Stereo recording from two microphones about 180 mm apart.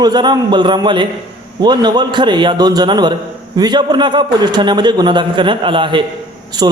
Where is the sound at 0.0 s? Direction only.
25° right (ahead or behind).